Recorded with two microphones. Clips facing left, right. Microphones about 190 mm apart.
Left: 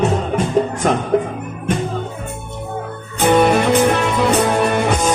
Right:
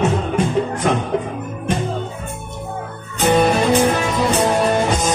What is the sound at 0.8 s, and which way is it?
Music, 45° left (ahead or behind).